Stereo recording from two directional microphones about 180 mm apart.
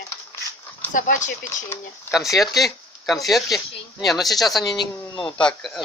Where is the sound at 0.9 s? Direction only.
45° left (ahead or behind).